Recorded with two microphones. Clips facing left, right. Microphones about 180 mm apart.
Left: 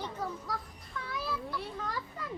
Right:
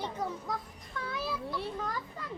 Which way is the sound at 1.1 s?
25° right (ahead or behind).